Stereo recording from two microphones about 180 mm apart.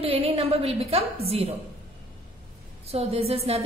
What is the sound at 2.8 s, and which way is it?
Speech, 35° right (ahead or behind).